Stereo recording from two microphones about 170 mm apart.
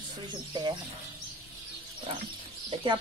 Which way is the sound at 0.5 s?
25° right (ahead or behind).